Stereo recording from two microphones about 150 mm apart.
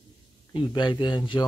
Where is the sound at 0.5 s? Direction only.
30° left (ahead or behind).